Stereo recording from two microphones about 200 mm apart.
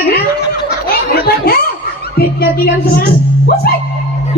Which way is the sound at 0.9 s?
50° left (ahead or behind).